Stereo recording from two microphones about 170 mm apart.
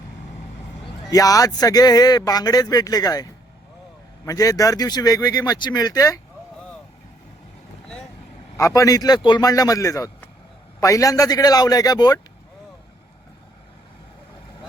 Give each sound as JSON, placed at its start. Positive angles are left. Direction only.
{"t": 1.1, "sound": "speech", "side_deg": 20}
{"t": 8.5, "sound": "speech", "side_deg": 20}